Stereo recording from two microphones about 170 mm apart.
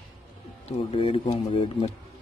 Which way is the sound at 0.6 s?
35° left (ahead or behind).